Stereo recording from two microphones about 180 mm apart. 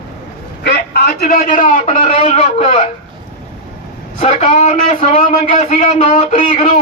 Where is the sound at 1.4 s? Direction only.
50° left (ahead or behind).